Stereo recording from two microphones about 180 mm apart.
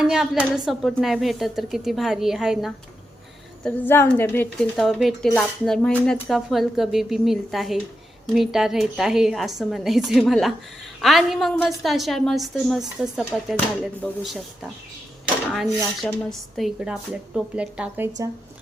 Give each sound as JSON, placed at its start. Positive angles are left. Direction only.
{"t": 0.0, "sound": "speech", "side_deg": -5}
{"t": 3.6, "sound": "speech", "side_deg": 10}
{"t": 16.0, "sound": "speech", "side_deg": 0}